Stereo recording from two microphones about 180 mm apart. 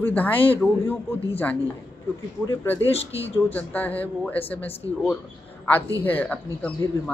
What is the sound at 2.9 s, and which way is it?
Speech, 35° left (ahead or behind).